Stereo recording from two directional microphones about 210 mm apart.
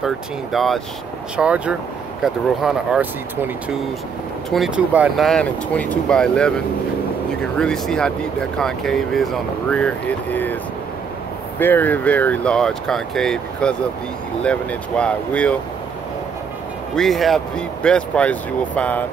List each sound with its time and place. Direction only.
0.0 s speech: centre (ahead or behind)
4.5 s speech: centre (ahead or behind)
11.6 s speech: 10° left (ahead or behind)
16.9 s speech: centre (ahead or behind)